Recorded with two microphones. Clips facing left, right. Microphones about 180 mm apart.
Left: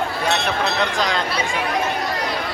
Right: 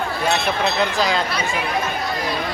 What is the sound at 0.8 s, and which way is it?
Speech, 5° right (ahead or behind).